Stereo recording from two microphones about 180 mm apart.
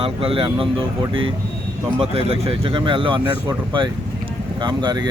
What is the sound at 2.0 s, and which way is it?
Speech, 30° right (ahead or behind).